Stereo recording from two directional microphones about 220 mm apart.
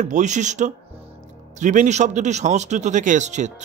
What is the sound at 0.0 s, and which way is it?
A man's voice, 35° right (ahead or behind).